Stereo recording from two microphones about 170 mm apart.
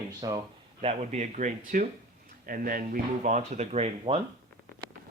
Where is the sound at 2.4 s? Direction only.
55° right (ahead or behind); by 4.2 s 35° right (ahead or behind).